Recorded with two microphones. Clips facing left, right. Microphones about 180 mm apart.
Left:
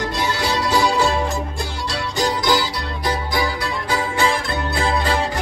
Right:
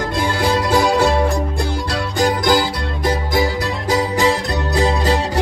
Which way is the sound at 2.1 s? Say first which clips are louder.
Right 4 dB; 55° right (ahead or behind).